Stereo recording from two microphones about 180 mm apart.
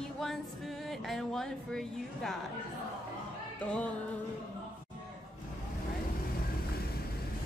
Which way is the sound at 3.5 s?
5° left (ahead or behind).